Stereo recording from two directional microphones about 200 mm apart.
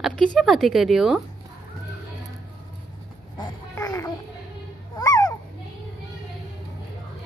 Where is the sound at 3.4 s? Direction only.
15° left (ahead or behind).